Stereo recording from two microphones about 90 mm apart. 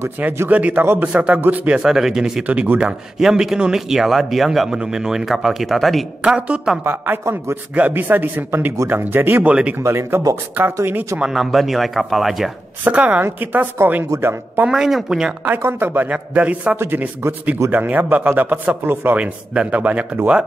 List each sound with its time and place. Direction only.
0.2 s a man's voice: 25° right (ahead or behind); by 6.0 s centre (ahead or behind)
6.2 s a man's voice: 10° right (ahead or behind)
6.8 s a man's voice: 25° right (ahead or behind)
9.8 s speech: 30° right (ahead or behind)
11.1 s a man's voice: 5° right (ahead or behind)
12.8 s speech: 15° right (ahead or behind)
14.7 s a man's voice: 5° right (ahead or behind)
15.4 s a man's voice: 20° right (ahead or behind)